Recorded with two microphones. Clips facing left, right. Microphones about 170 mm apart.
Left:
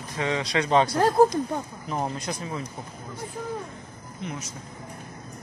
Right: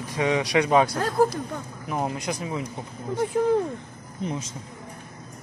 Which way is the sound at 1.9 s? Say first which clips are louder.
Right 2 dB; 10° right (ahead or behind).